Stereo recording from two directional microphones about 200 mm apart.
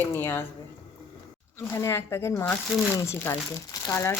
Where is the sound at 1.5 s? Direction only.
10° left (ahead or behind).